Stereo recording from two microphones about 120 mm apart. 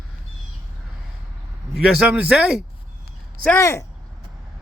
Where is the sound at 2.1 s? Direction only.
10° right (ahead or behind).